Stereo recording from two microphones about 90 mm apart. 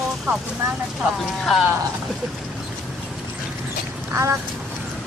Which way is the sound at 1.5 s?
5° left (ahead or behind).